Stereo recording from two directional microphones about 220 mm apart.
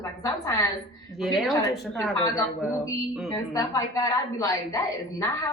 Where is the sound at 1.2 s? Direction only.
Centre (ahead or behind).